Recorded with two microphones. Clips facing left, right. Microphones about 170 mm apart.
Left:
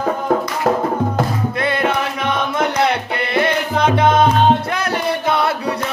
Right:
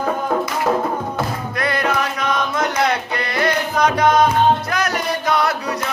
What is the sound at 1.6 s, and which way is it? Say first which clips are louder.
Music: left 1 dB; 25° left (ahead or behind).